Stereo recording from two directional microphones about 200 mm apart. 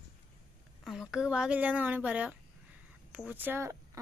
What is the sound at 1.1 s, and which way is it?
Speech, 5° right (ahead or behind).